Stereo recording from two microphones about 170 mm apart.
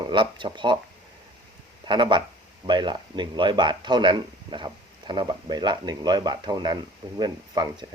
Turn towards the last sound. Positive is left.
turn(degrees=-25)  # may be behind; listen again after turning